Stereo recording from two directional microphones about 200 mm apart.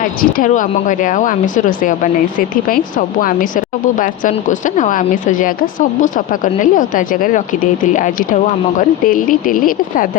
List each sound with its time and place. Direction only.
0.2 s speech: 45° left (ahead or behind)